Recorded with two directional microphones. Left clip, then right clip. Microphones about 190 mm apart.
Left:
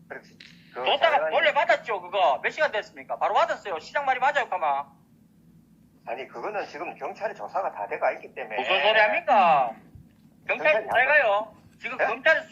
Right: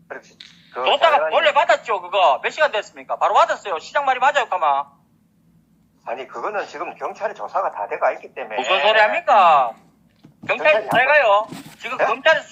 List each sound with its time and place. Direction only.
0.1 s a man's voice: 35° right (ahead or behind)
6.1 s a man's voice: 35° right (ahead or behind)